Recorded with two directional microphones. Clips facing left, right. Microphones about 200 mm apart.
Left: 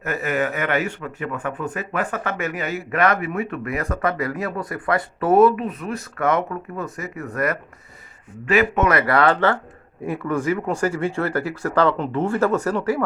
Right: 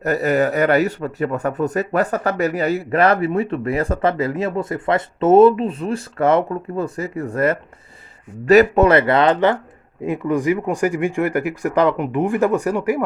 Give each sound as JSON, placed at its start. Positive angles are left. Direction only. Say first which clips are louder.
{"t": 0.0, "sound": "a man's voice", "louder": "right 6 dB", "side_deg": -40}